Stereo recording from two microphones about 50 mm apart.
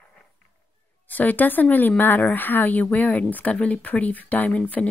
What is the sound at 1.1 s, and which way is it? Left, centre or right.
Speech, left.